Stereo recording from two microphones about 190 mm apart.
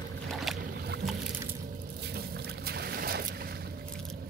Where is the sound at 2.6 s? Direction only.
55° right (ahead or behind).